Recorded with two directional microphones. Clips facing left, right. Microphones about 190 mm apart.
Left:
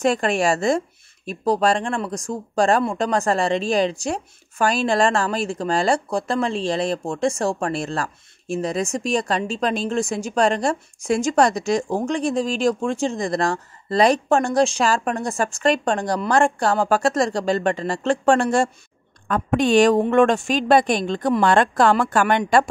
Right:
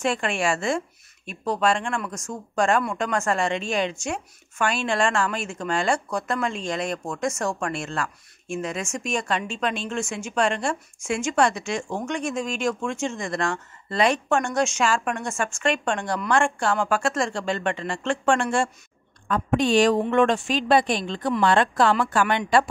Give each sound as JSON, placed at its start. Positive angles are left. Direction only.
{"t": 0.0, "sound": "speech", "side_deg": 40}
{"t": 19.2, "sound": "a woman's voice", "side_deg": 50}